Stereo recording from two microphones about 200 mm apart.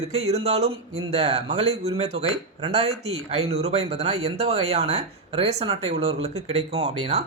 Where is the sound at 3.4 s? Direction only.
30° right (ahead or behind).